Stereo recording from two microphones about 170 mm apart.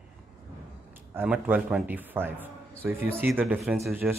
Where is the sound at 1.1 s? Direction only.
10° right (ahead or behind).